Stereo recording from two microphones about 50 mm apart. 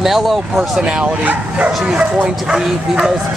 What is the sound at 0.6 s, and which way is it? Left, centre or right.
Speech, centre.